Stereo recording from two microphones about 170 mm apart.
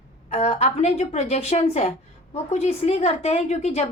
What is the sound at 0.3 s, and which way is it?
A woman's voice, 35° left (ahead or behind).